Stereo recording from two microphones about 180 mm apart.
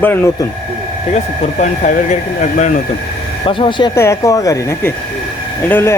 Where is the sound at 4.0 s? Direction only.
15° left (ahead or behind).